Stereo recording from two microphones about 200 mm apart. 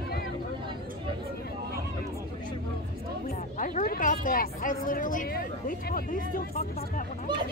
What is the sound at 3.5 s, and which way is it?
A woman's voice, 40° left (ahead or behind).